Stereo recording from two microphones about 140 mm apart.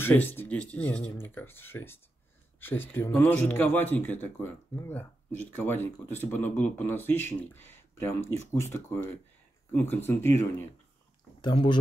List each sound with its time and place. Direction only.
0.0 s speech: 15° left (ahead or behind)
11.4 s speech: 35° left (ahead or behind)